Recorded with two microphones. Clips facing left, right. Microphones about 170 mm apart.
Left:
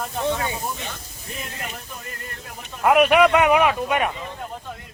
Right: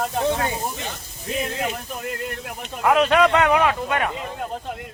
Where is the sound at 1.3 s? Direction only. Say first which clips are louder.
Right 9 dB; 80° right.